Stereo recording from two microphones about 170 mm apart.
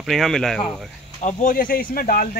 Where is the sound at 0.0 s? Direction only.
Centre (ahead or behind).